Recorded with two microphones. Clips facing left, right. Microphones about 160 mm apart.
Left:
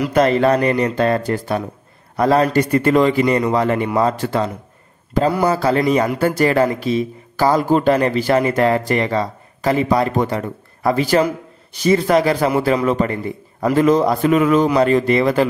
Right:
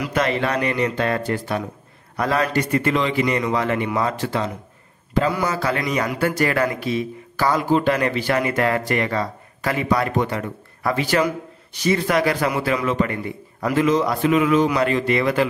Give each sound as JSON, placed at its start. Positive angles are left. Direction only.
{"t": 0.1, "sound": "speech", "side_deg": 40}